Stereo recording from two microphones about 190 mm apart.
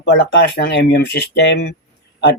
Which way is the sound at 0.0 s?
65° left (ahead or behind).